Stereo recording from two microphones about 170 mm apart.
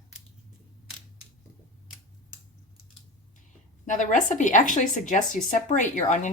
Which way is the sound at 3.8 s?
50° left (ahead or behind).